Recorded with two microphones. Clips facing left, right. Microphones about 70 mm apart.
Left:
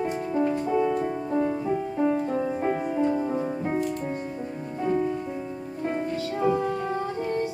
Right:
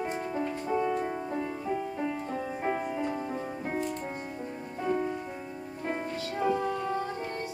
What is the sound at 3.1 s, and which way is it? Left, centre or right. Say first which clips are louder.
Music: left 8 dB; left.